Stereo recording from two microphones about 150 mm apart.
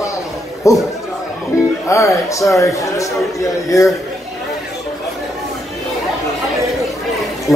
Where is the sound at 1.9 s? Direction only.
20° left (ahead or behind).